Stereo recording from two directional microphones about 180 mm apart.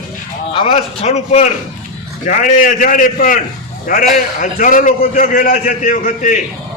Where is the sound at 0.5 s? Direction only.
30° left (ahead or behind).